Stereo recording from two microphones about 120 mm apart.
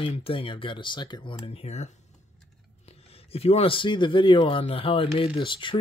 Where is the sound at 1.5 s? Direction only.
60° left (ahead or behind).